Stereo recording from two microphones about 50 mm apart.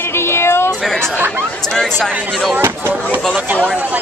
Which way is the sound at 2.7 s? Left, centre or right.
Right.